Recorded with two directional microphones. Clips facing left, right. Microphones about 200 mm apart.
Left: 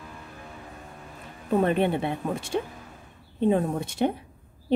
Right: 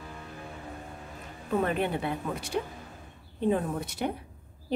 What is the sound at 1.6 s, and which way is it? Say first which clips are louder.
A woman's voice: left 5 dB; 25° left (ahead or behind).